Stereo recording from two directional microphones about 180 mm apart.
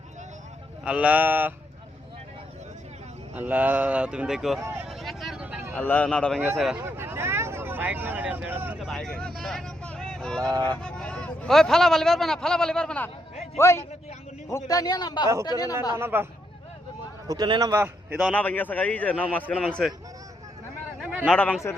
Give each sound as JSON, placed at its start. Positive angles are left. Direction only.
{"t": 0.9, "sound": "speech", "side_deg": -5}
{"t": 3.3, "sound": "speech", "side_deg": -10}
{"t": 4.6, "sound": "vehicle", "side_deg": -10}
{"t": 5.7, "sound": "a man's voice", "side_deg": 10}
{"t": 6.8, "sound": "speech", "side_deg": -10}
{"t": 10.4, "sound": "a man's voice", "side_deg": -20}
{"t": 10.8, "sound": "a man's voice", "side_deg": 5}
{"t": 16.0, "sound": "speech", "side_deg": -10}
{"t": 17.2, "sound": "a man's voice", "side_deg": -20}
{"t": 18.2, "sound": "a man's voice", "side_deg": 5}
{"t": 21.0, "sound": "a sound", "side_deg": -10}
{"t": 21.2, "sound": "a man's voice", "side_deg": 10}